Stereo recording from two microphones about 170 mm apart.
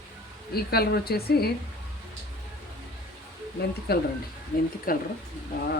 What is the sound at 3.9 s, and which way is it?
Speech, 70° left (ahead or behind).